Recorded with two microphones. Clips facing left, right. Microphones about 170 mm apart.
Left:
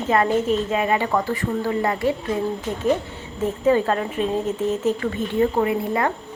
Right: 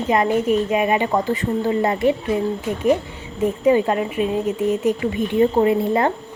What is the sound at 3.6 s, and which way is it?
A woman's voice, 15° right (ahead or behind).